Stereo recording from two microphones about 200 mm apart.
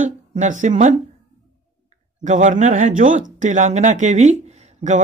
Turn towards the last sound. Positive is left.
turn(degrees=-35)  # may be behind; listen again after turning